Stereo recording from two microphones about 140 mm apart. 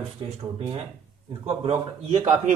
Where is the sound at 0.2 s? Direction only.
35° right (ahead or behind).